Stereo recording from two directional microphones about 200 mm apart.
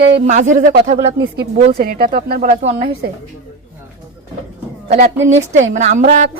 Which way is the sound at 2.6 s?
25° right (ahead or behind).